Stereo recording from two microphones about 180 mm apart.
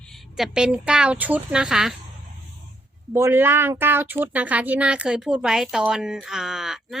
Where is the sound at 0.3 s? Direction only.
5° right (ahead or behind).